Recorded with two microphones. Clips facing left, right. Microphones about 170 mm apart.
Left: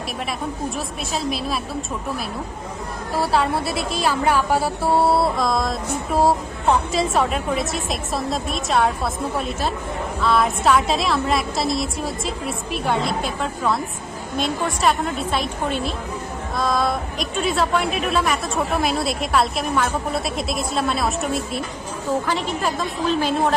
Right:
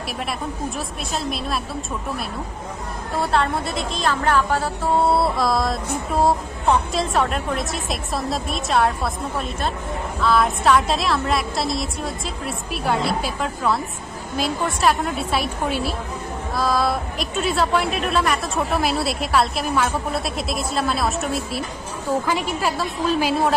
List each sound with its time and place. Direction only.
0.7 s a woman's voice: centre (ahead or behind)
3.2 s a woman's voice: 5° left (ahead or behind)